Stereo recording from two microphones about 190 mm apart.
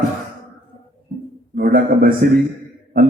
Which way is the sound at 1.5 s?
50° right (ahead or behind).